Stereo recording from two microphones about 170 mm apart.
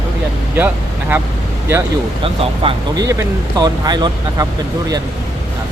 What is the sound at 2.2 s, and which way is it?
Speech, 30° right (ahead or behind).